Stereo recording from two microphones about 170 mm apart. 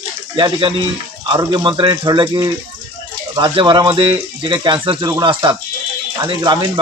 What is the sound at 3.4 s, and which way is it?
Speech, 30° right (ahead or behind).